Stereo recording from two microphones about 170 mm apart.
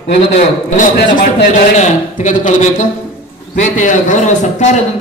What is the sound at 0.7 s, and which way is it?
A man's voice, 50° left (ahead or behind).